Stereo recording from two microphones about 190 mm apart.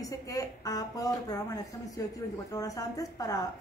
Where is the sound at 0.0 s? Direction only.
20° left (ahead or behind).